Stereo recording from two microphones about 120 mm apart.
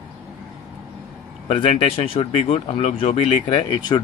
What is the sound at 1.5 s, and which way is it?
Speech, 60° left (ahead or behind).